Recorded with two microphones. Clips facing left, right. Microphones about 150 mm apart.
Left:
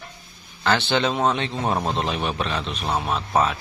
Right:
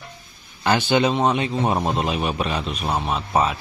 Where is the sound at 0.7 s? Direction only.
15° right (ahead or behind).